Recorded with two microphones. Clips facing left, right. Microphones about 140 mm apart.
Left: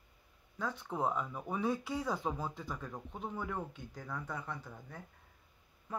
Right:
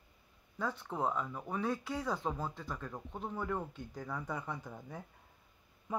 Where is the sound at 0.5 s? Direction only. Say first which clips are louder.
Even; centre (ahead or behind).